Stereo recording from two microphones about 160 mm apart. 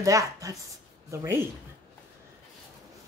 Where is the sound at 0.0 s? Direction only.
20° right (ahead or behind).